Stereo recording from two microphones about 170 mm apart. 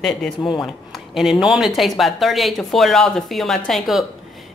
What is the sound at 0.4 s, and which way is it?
Speech, 25° left (ahead or behind).